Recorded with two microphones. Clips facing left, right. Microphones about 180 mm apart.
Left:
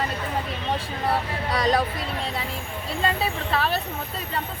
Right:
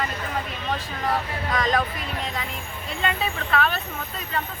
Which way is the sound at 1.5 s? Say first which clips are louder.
Left 1 dB; 35° left (ahead or behind).